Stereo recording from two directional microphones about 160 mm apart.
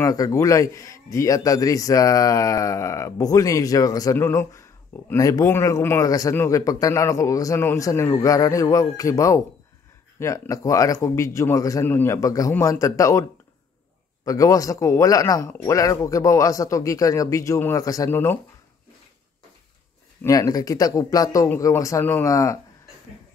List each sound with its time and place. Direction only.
0.0 s speech: 20° left (ahead or behind)
14.2 s speech: 20° left (ahead or behind)
20.2 s speech: 20° left (ahead or behind)